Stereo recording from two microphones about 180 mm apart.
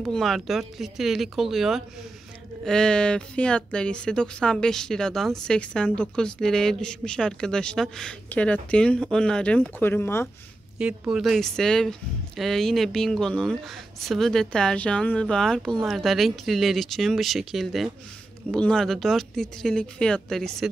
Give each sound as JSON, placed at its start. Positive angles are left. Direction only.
{"t": 0.0, "sound": "a woman's voice", "side_deg": 0}
{"t": 10.8, "sound": "a woman's voice", "side_deg": -5}